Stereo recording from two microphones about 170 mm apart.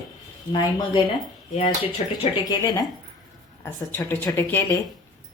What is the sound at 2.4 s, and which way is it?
A woman's voice, 20° left (ahead or behind).